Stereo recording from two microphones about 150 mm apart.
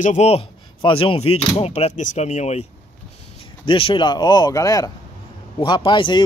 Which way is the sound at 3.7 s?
35° left (ahead or behind).